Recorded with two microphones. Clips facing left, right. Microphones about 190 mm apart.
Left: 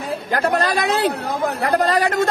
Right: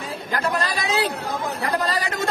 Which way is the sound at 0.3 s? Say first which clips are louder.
Left 5 dB; 60° left (ahead or behind).